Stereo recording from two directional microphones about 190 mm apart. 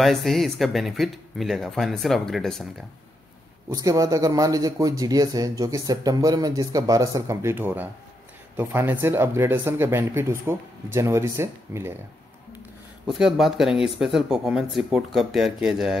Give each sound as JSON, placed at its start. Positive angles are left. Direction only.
{"t": 0.0, "sound": "speech", "side_deg": 0}
{"t": 3.7, "sound": "speech", "side_deg": -20}
{"t": 13.0, "sound": "speech", "side_deg": 0}